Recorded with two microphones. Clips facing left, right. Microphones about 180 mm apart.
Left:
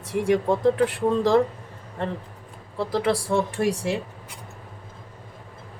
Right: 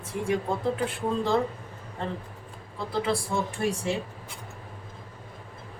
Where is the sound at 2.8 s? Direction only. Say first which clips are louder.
Left 5 dB; 80° left.